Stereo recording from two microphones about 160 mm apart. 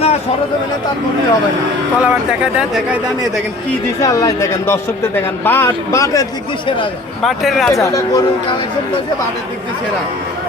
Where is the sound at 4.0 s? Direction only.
20° left (ahead or behind).